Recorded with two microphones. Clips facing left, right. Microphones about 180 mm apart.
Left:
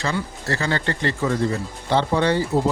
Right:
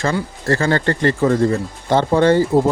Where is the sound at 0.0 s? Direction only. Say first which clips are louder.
Right 5 dB; 50° right (ahead or behind).